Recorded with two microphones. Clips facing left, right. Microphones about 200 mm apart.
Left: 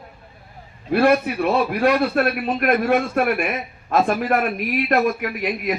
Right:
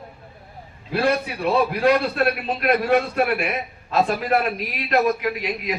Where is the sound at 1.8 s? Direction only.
60° left (ahead or behind).